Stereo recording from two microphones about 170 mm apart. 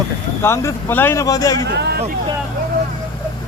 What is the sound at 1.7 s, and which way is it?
Speech, 80° right.